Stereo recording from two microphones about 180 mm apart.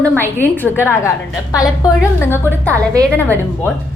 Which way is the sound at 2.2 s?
15° left (ahead or behind).